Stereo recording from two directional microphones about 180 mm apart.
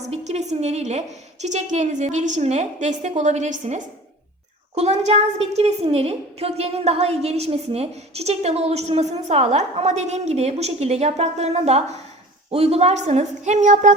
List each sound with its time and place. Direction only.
0.0 s a woman's voice: 40° right (ahead or behind)